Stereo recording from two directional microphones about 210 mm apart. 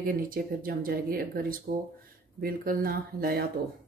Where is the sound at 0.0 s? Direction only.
45° right (ahead or behind).